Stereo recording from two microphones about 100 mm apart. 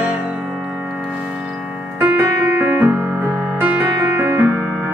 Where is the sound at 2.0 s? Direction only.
20° right (ahead or behind).